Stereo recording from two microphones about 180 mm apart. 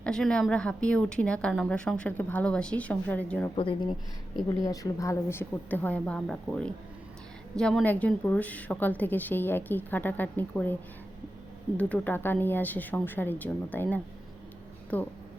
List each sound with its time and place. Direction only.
0.0 s a woman's voice: 5° left (ahead or behind)
3.5 s a woman's voice: 30° left (ahead or behind); by 10.8 s 10° left (ahead or behind)
11.8 s a woman's voice: 10° left (ahead or behind)